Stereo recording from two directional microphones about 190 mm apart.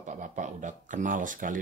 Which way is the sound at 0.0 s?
40° right (ahead or behind).